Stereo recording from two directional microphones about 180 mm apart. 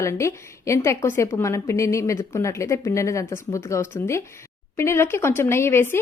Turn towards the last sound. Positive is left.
turn(degrees=15)  # may be behind; listen again after turning